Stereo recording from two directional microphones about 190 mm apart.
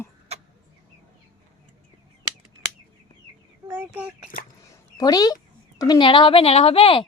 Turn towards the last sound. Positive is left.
turn(degrees=30)  # may be behind; listen again after turning